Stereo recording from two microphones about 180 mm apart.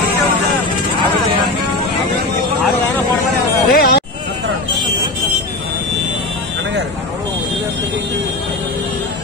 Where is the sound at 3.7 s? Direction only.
55° left (ahead or behind).